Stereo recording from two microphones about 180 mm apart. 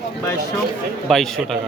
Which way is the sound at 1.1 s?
Centre (ahead or behind).